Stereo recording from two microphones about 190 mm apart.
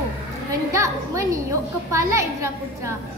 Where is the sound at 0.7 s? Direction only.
15° right (ahead or behind).